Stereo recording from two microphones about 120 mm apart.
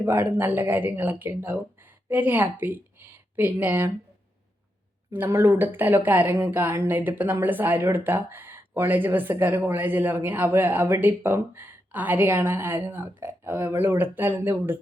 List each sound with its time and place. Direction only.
0.0 s a woman's voice: 15° right (ahead or behind)
5.1 s speech: 20° right (ahead or behind)